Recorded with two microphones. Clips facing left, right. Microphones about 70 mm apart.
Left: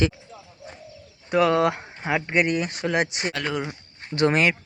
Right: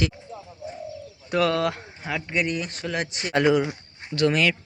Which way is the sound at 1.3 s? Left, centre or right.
Centre.